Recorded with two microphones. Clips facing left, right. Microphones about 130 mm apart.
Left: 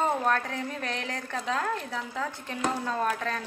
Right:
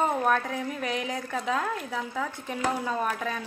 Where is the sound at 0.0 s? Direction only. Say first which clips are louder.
Right 1 dB; 5° right (ahead or behind).